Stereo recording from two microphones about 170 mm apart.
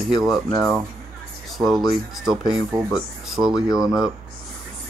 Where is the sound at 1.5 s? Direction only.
Centre (ahead or behind).